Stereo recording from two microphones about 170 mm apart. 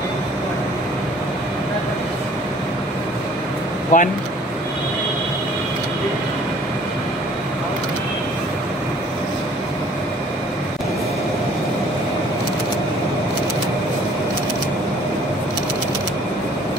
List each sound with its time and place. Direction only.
3.9 s speech: 50° left (ahead or behind)